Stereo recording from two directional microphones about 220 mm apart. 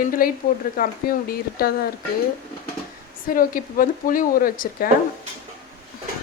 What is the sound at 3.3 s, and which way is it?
Speech, 40° left (ahead or behind).